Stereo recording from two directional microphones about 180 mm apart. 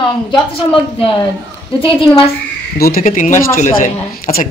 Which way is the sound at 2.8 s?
55° left (ahead or behind).